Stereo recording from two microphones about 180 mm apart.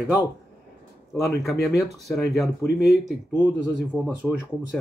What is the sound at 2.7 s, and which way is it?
Speech, 70° left (ahead or behind).